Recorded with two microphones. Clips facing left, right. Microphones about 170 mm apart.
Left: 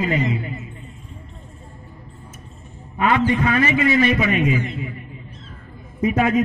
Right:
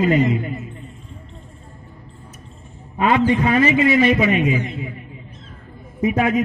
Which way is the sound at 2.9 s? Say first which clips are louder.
Right 2 dB; 25° right (ahead or behind).